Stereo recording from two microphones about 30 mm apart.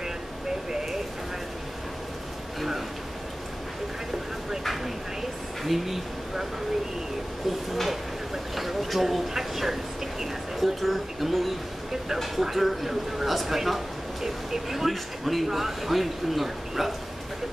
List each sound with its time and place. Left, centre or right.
0.7 s a sound: centre
5.6 s speech: centre
7.7 s speech: centre